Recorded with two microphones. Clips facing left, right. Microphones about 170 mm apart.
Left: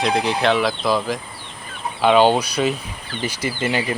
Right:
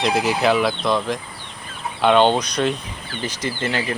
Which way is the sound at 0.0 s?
5° right (ahead or behind).